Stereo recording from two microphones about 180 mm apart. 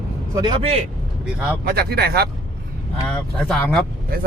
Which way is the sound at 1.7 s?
60° right (ahead or behind).